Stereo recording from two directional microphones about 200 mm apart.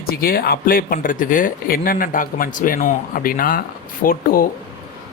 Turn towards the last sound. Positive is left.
turn(degrees=45)  # may be behind; listen again after turning